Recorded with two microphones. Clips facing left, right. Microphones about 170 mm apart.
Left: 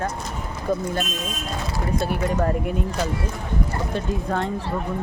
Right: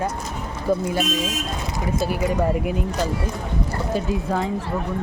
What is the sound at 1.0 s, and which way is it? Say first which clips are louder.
Speech: right 6 dB; 90° right.